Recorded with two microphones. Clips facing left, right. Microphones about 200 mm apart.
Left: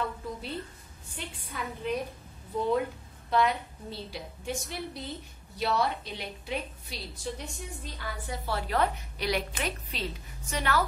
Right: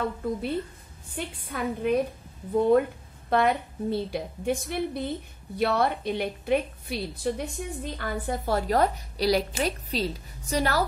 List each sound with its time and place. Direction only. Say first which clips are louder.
1.1 s a woman's voice: right 6 dB; 55° right (ahead or behind); by 10.9 s 40° right (ahead or behind)